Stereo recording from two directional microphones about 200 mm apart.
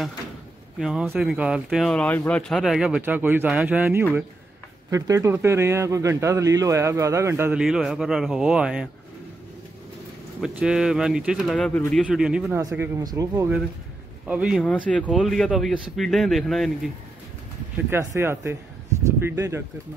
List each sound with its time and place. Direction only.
0.7 s speech: 5° right (ahead or behind)
10.4 s speech: 5° right (ahead or behind)
14.2 s speech: 5° right (ahead or behind)
17.8 s speech: 10° right (ahead or behind)